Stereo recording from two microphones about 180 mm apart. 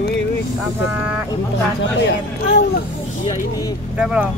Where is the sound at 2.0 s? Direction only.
70° left (ahead or behind).